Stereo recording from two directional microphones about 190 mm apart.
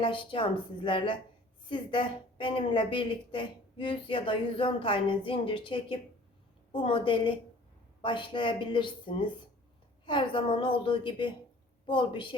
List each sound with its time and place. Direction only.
0.0 s a woman's voice: 25° left (ahead or behind)